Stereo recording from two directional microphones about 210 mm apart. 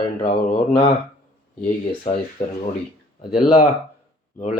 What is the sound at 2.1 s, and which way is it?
Speech, 35° left (ahead or behind).